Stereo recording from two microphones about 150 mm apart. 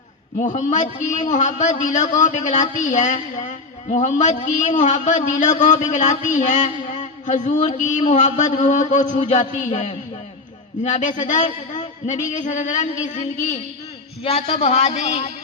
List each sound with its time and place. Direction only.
0.3 s a man's voice: 55° left (ahead or behind)
14.3 s a man's voice: 45° left (ahead or behind)